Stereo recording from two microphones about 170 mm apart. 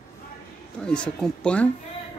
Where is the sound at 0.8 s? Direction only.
5° left (ahead or behind).